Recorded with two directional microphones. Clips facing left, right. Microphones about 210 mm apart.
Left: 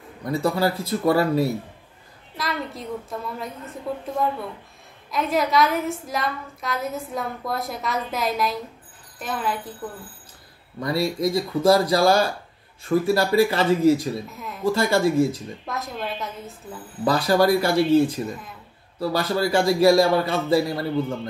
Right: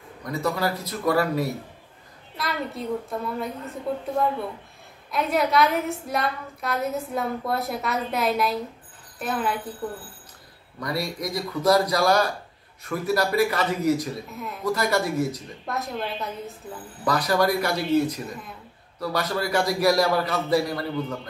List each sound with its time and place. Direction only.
0.2 s a man's voice: 30° left (ahead or behind)
2.3 s a woman's voice: centre (ahead or behind)
5.1 s a woman's voice: centre (ahead or behind)
10.8 s a man's voice: 25° left (ahead or behind)
14.3 s a woman's voice: centre (ahead or behind)
14.6 s a man's voice: 25° left (ahead or behind)
15.6 s a woman's voice: centre (ahead or behind)
17.0 s a man's voice: 30° left (ahead or behind)